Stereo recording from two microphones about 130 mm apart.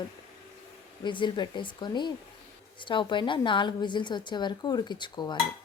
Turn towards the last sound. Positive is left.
turn(degrees=35)  # may be behind; listen again after turning